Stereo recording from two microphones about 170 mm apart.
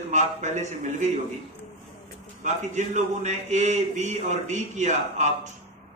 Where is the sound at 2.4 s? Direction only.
45° right (ahead or behind).